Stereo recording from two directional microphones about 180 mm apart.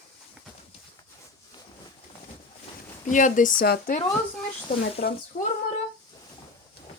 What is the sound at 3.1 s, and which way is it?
A woman's voice, 45° left (ahead or behind).